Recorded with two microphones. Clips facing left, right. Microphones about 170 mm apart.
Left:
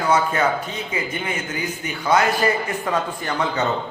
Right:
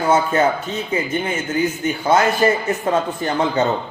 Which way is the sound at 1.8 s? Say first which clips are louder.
Right 1 dB; 30° right (ahead or behind).